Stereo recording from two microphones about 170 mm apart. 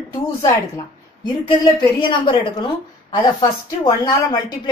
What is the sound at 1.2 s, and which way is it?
Speech, 25° left (ahead or behind).